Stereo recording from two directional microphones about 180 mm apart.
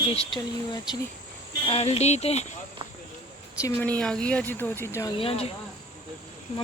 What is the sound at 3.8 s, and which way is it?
Speech, 5° left (ahead or behind).